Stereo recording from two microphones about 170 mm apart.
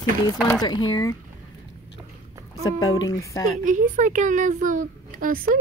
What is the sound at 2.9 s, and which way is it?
Speech, 20° left (ahead or behind).